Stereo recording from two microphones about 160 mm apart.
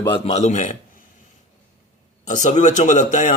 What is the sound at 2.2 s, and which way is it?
A man's voice, 50° left (ahead or behind).